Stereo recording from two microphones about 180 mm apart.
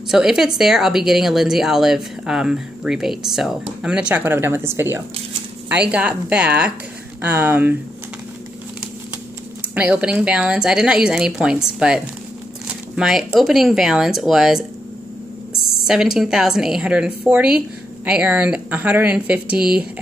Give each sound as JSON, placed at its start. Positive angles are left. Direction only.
{"t": 0.1, "sound": "a woman's voice", "side_deg": -5}
{"t": 9.8, "sound": "a woman's voice", "side_deg": -5}
{"t": 15.5, "sound": "a sound", "side_deg": 55}
{"t": 15.9, "sound": "a woman's voice", "side_deg": -5}